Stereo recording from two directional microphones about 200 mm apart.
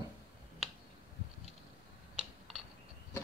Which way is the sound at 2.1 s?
Centre (ahead or behind).